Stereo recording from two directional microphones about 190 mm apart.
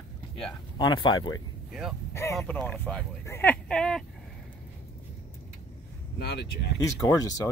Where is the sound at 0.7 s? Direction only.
25° left (ahead or behind).